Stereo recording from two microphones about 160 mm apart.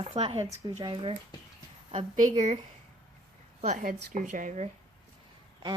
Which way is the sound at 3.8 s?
55° right (ahead or behind).